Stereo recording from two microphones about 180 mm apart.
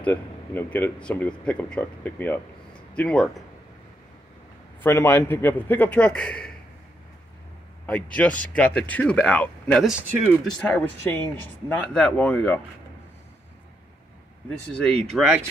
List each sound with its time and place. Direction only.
0.0 s speech: 10° left (ahead or behind)
4.8 s speech: 15° left (ahead or behind)
7.8 s speech: 10° left (ahead or behind)
10.6 s speech: 5° left (ahead or behind)
14.7 s speech: 5° left (ahead or behind)
15.1 s speech: 5° right (ahead or behind)